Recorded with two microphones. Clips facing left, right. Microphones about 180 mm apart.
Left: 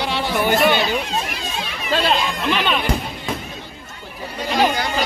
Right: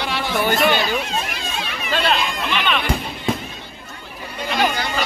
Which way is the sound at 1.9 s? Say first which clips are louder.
Left 2 dB; 35° left (ahead or behind).